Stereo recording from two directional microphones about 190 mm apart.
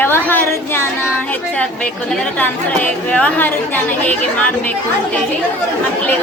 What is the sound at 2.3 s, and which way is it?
A woman's voice, 5° left (ahead or behind).